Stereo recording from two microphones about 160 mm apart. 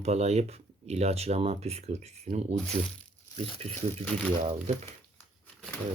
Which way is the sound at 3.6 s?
45° right (ahead or behind).